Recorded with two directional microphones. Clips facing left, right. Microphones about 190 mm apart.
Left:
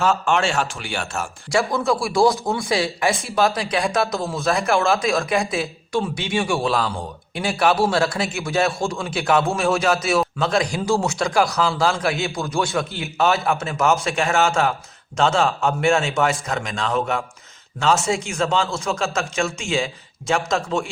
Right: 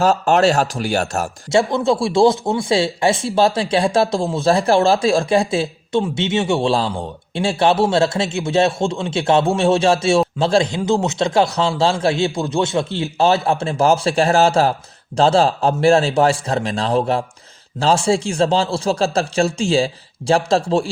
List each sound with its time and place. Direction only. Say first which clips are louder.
0.0 s a man's voice: right 5 dB; 40° right (ahead or behind)
1.5 s a man's voice: right 4 dB; 25° right (ahead or behind)